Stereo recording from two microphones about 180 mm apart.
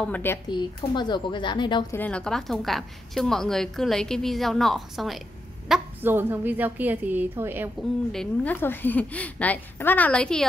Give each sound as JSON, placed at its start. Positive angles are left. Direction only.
{"t": 0.0, "sound": "a woman's voice", "side_deg": 10}
{"t": 0.5, "sound": "speech", "side_deg": 25}
{"t": 2.0, "sound": "a woman's voice", "side_deg": 5}
{"t": 5.7, "sound": "a woman's voice", "side_deg": -10}
{"t": 8.1, "sound": "a woman's voice", "side_deg": 5}